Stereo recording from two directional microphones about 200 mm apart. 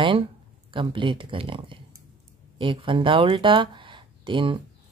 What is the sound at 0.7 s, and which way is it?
Speech, 25° right (ahead or behind).